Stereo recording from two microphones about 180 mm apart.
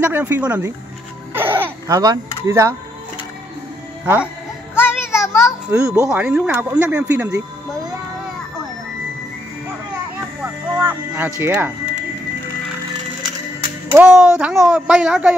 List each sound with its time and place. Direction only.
0.0 s speech: 10° right (ahead or behind)
4.0 s speech: 10° right (ahead or behind)
4.7 s music: 15° left (ahead or behind)
5.7 s speech: 15° right (ahead or behind)
10.8 s speech: 10° right (ahead or behind)
13.9 s speech: 10° right (ahead or behind)